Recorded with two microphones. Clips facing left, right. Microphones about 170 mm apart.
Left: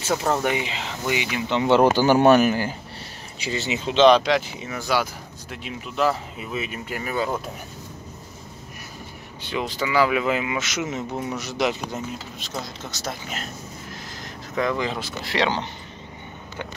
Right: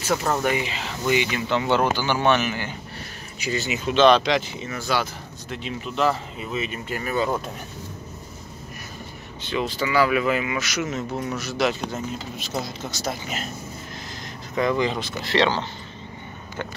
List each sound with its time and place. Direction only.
0.1 s speech: 15° left (ahead or behind)
1.6 s speech: 25° left (ahead or behind)
2.0 s speech: 40° left (ahead or behind)
3.3 s speech: 25° left (ahead or behind); by 7.2 s 10° left (ahead or behind)
9.4 s speech: 15° left (ahead or behind)
12.4 s speech: 5° right (ahead or behind)
14.5 s speech: centre (ahead or behind)